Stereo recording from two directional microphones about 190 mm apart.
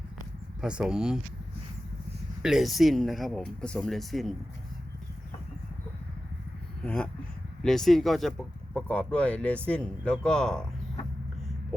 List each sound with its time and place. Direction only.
0.6 s speech: 5° right (ahead or behind)
2.4 s speech: centre (ahead or behind)
6.8 s speech: 5° left (ahead or behind)